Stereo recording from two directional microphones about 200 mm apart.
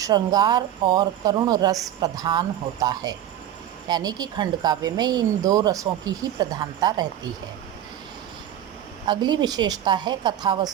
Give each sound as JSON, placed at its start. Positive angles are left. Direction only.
{"t": 0.0, "sound": "a woman's voice", "side_deg": -20}
{"t": 9.0, "sound": "a woman's voice", "side_deg": -20}